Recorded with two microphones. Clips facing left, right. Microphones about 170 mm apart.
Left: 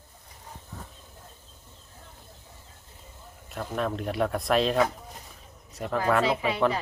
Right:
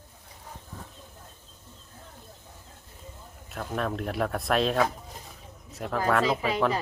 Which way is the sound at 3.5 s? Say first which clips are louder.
Left 1 dB; centre (ahead or behind).